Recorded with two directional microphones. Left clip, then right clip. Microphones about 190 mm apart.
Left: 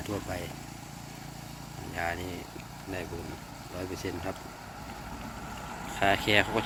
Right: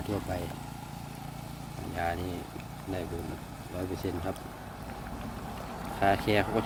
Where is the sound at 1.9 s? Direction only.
5° right (ahead or behind).